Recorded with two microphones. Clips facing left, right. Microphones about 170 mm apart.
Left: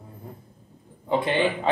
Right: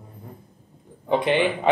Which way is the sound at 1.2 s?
20° right (ahead or behind).